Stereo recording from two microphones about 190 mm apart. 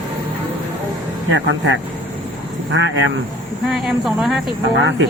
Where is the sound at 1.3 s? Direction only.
80° right.